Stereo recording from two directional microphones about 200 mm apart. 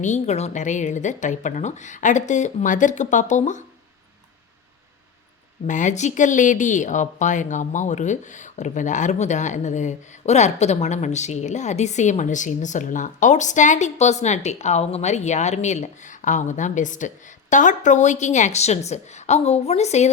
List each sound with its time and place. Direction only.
0.0 s speech: 35° left (ahead or behind)
5.6 s speech: 40° left (ahead or behind)